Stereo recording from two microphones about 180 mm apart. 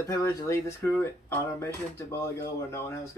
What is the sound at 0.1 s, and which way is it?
Speech, 15° left (ahead or behind).